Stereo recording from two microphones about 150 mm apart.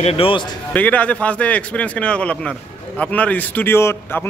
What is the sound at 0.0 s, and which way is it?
Speech, 40° left (ahead or behind).